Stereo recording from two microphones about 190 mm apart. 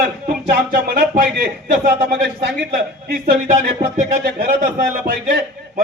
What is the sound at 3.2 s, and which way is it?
Speech, 50° right (ahead or behind).